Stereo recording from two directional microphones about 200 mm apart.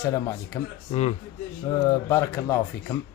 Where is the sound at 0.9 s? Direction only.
30° left (ahead or behind).